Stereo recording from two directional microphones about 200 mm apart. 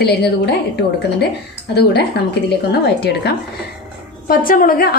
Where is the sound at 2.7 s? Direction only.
55° left (ahead or behind).